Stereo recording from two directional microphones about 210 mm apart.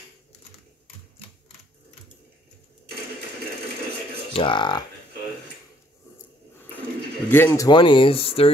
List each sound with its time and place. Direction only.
4.3 s speech: 25° left (ahead or behind)
7.2 s speech: 10° left (ahead or behind); by 8.5 s 25° left (ahead or behind)